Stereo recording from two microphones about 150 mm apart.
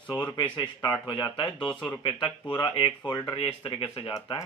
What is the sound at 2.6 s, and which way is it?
Speech, 30° left (ahead or behind).